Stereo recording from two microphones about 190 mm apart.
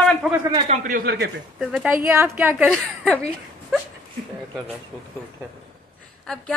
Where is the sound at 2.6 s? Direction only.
Centre (ahead or behind).